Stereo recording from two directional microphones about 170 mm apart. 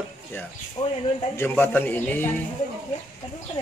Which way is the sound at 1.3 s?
10° left (ahead or behind).